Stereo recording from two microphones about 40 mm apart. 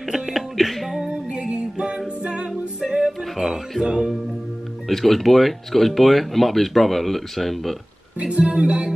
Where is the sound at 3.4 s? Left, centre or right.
Centre.